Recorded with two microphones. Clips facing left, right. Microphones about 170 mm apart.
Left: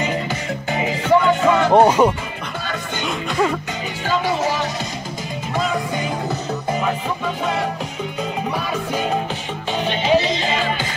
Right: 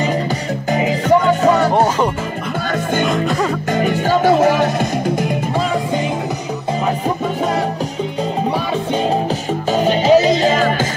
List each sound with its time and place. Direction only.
0.7 s music: 40° right (ahead or behind)
1.7 s music: 15° left (ahead or behind)
2.7 s music: 50° right (ahead or behind)
9.7 s music: 40° right (ahead or behind)